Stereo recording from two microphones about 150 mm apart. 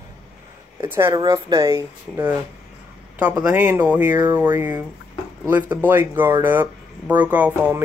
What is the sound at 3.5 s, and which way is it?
Speech, 10° right (ahead or behind).